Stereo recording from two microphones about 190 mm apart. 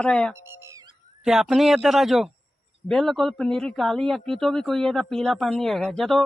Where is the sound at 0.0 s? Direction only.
5° left (ahead or behind).